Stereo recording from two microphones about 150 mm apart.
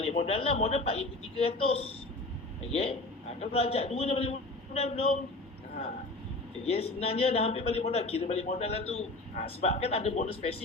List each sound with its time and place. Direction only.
0.0 s a woman's voice: 45° left (ahead or behind)
6.7 s a man's voice: 40° left (ahead or behind)